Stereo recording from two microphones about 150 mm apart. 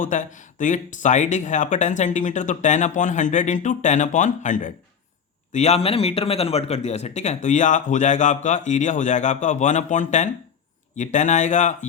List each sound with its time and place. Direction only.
0.0 s speech: 60° left (ahead or behind)